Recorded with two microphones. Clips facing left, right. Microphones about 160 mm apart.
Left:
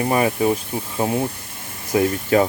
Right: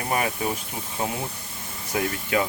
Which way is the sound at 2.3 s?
40° left (ahead or behind).